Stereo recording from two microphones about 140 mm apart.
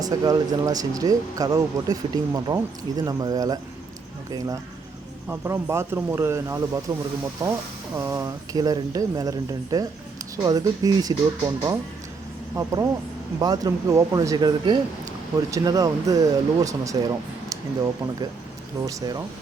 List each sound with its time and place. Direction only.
0.0 s speech: 25° right (ahead or behind)